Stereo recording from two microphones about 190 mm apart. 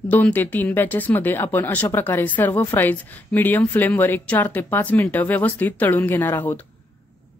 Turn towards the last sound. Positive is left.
turn(degrees=10)  # may be behind; listen again after turning